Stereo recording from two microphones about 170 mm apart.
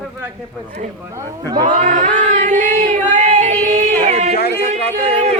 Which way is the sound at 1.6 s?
45° right (ahead or behind).